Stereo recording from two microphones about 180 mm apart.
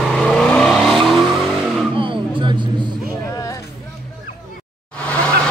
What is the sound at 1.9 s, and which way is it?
Music, 30° right (ahead or behind).